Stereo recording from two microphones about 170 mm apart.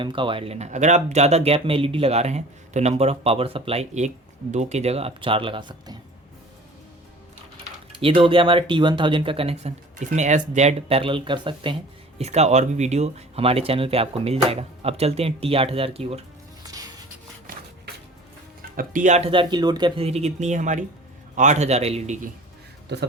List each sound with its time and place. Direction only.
0.0 s speech: 30° right (ahead or behind)
8.0 s speech: 30° right (ahead or behind)
12.2 s speech: 40° right (ahead or behind)
16.7 s music: 20° right (ahead or behind)
18.8 s speech: 50° right (ahead or behind)